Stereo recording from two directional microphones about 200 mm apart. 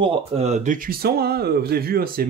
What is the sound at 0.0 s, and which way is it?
Speech, 30° right (ahead or behind).